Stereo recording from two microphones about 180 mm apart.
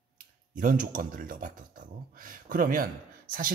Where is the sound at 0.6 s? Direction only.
50° right (ahead or behind).